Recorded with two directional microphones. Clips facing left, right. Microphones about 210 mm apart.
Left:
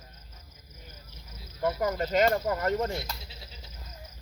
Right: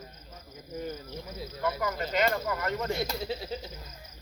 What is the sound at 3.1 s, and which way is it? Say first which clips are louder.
Speech: right 13 dB; 65° right (ahead or behind).